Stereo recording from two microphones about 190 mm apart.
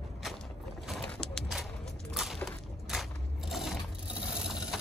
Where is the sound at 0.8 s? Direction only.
5° left (ahead or behind).